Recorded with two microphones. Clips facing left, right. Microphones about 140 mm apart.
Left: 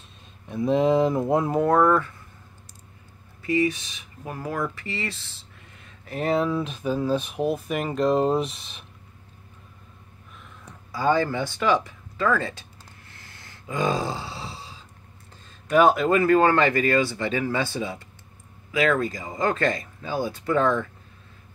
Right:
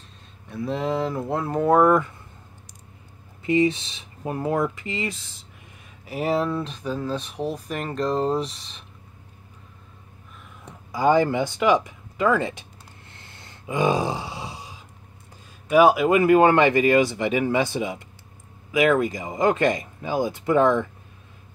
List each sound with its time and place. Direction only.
0.5 s speech: 20° left (ahead or behind)
1.6 s speech: 10° right (ahead or behind)
3.4 s speech: 25° right (ahead or behind); by 8.8 s 10° left (ahead or behind)
10.6 s speech: 15° right (ahead or behind)
13.1 s a sound: 25° right (ahead or behind)
15.7 s speech: 10° right (ahead or behind)